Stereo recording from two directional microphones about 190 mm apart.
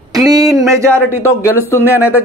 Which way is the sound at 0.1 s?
20° right (ahead or behind).